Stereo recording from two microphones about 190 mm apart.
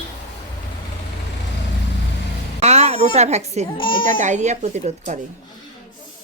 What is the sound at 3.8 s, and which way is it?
Speech, 25° left (ahead or behind).